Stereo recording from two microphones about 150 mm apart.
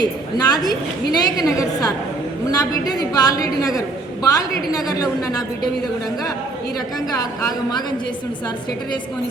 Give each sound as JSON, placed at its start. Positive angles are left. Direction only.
{"t": 0.0, "sound": "a woman's voice", "side_deg": 25}
{"t": 7.1, "sound": "a woman's voice", "side_deg": 25}